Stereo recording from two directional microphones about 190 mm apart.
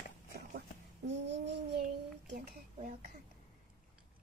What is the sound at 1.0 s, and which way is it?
Babbling, 65° right (ahead or behind).